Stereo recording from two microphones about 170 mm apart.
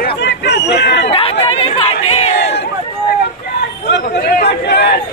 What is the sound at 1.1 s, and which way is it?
Chatter, 35° left (ahead or behind).